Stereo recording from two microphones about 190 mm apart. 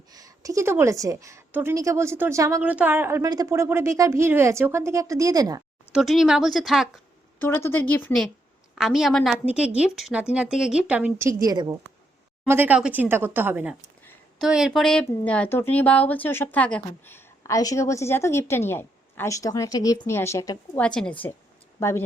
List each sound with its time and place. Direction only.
0.1 s a woman's voice: 20° right (ahead or behind)
5.9 s speech: centre (ahead or behind)
7.3 s a woman's voice: 10° left (ahead or behind); by 11.8 s 20° right (ahead or behind)
12.5 s a woman's voice: 10° right (ahead or behind)
14.0 s a sound: 10° left (ahead or behind)
14.4 s speech: centre (ahead or behind); by 20.6 s 15° left (ahead or behind)
20.7 s speech: 5° left (ahead or behind)